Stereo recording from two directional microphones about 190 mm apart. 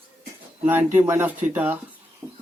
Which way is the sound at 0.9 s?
10° right (ahead or behind).